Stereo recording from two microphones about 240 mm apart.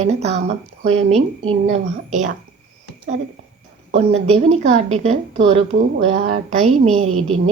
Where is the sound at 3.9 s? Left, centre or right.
Right.